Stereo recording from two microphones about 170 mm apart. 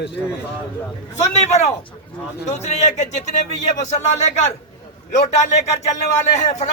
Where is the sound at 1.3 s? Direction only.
40° left (ahead or behind).